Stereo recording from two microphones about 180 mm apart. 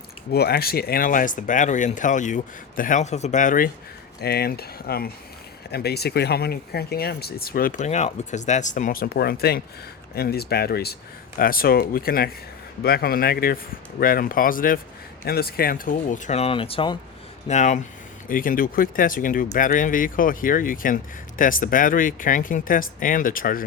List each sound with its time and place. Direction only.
0.3 s speech: 60° left (ahead or behind)
4.2 s speech: 60° left (ahead or behind); by 17.0 s 30° left (ahead or behind)
17.5 s speech: 40° left (ahead or behind)